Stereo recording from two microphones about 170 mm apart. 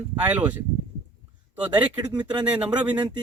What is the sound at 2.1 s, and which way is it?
Speech, 25° right (ahead or behind).